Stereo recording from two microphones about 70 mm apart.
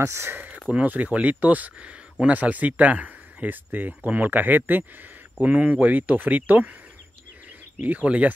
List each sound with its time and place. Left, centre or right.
0.0 s speech: right
0.8 s speech: right
7.8 s speech: right